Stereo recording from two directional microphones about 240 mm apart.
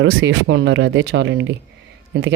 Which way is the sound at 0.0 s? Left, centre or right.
Right.